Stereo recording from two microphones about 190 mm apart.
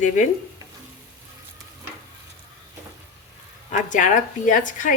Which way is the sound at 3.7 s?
40° left (ahead or behind).